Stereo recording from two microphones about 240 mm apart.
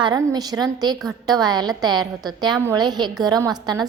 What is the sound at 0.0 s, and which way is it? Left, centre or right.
A woman's voice, centre.